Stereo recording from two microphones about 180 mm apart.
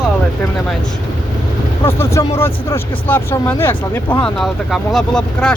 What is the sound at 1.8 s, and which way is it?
Speech, 15° left (ahead or behind).